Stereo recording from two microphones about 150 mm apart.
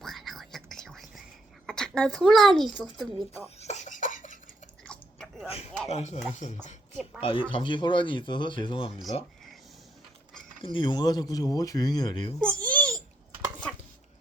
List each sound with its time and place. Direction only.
0.0 s whispering: centre (ahead or behind)
1.6 s speech: 5° left (ahead or behind)
3.6 s a sound: 50° left (ahead or behind)
4.9 s chewing: 5° left (ahead or behind)
5.5 s a sound: 40° left (ahead or behind)
5.9 s speech: 50° left (ahead or behind)
7.2 s speech: 35° left (ahead or behind)
10.6 s speech: 35° left (ahead or behind)
12.4 s babbling: 5° left (ahead or behind)